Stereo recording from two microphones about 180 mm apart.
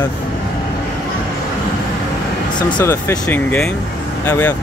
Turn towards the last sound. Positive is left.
turn(degrees=10)  # may be behind; listen again after turning